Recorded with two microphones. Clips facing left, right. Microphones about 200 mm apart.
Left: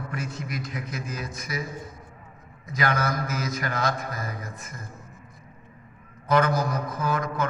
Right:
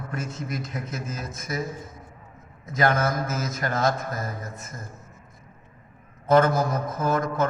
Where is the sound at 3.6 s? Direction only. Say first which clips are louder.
Right 7 dB; 45° right (ahead or behind).